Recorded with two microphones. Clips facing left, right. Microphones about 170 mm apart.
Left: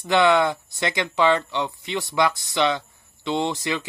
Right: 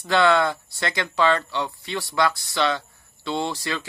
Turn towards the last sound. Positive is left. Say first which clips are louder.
# left 2 dB
turn(degrees=20)  # may be behind; listen again after turning